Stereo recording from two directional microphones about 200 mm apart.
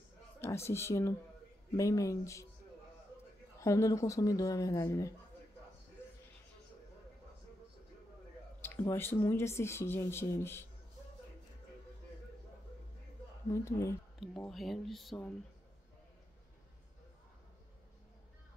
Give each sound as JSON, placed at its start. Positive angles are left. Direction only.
{"t": 0.4, "sound": "speech", "side_deg": 15}
{"t": 3.5, "sound": "speech", "side_deg": 15}
{"t": 8.6, "sound": "speech", "side_deg": 10}
{"t": 13.5, "sound": "speech", "side_deg": 15}
{"t": 14.2, "sound": "speech", "side_deg": 0}